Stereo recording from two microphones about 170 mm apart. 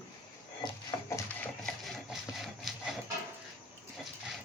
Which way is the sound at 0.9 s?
25° left (ahead or behind).